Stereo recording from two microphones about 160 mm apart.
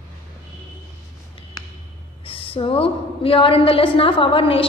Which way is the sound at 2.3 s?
35° left (ahead or behind).